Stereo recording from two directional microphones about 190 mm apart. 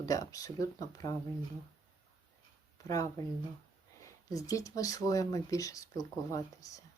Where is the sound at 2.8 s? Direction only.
15° left (ahead or behind).